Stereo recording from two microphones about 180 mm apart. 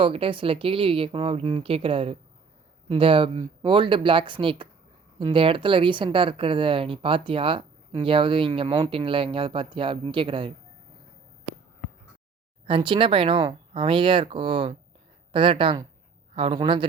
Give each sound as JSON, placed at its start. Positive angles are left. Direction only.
{"t": 0.0, "sound": "speech", "side_deg": -30}
{"t": 12.6, "sound": "speech", "side_deg": -30}